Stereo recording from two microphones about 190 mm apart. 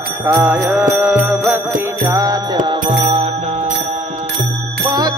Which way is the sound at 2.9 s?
35° right (ahead or behind).